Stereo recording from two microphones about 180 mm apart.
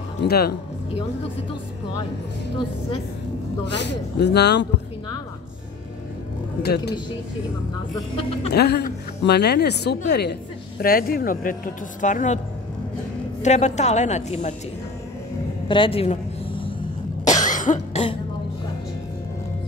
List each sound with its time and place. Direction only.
0.2 s speech: 60° left (ahead or behind)
3.8 s a woman's voice: 70° left (ahead or behind)
6.6 s speech: 60° left (ahead or behind)
8.5 s a woman's voice: 65° left (ahead or behind)
10.8 s speech: 55° left (ahead or behind)
13.4 s a woman's voice: 40° left (ahead or behind)
15.7 s a sound: 30° left (ahead or behind)
17.2 s cough: 45° left (ahead or behind)